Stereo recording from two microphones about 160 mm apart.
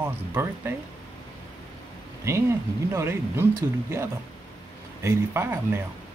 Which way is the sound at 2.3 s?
20° right (ahead or behind).